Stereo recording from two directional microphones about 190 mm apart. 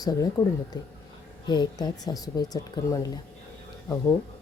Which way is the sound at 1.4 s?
20° left (ahead or behind).